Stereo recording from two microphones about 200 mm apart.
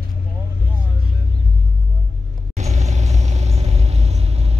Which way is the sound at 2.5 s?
35° right (ahead or behind).